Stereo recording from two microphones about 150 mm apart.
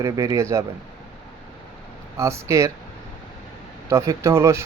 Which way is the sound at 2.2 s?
20° right (ahead or behind).